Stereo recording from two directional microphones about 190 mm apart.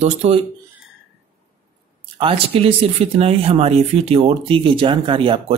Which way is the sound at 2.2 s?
30° right (ahead or behind).